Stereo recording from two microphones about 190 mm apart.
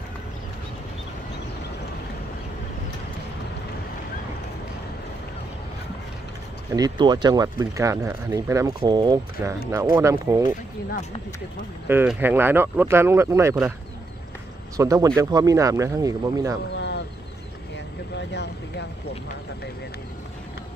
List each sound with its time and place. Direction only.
6.7 s speech: 20° right (ahead or behind)
11.9 s speech: 10° right (ahead or behind)
14.8 s speech: 15° right (ahead or behind)
16.7 s a sound: 65° left (ahead or behind)
18.1 s speech: 65° left (ahead or behind)